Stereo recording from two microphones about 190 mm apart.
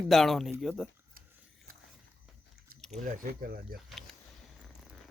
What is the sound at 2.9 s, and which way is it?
Speech, 45° right (ahead or behind).